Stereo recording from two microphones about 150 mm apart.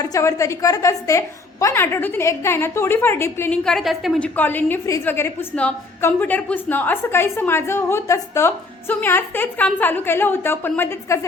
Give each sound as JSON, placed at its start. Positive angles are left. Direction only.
{"t": 0.0, "sound": "a woman's voice", "side_deg": 20}
{"t": 3.6, "sound": "a woman's voice", "side_deg": 5}
{"t": 4.4, "sound": "a woman's voice", "side_deg": 15}